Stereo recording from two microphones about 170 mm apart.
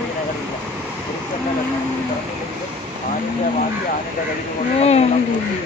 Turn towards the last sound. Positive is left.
turn(degrees=40)  # may be behind; listen again after turning